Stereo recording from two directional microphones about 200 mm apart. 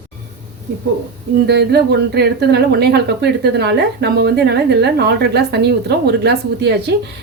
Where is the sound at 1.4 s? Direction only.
55° right (ahead or behind).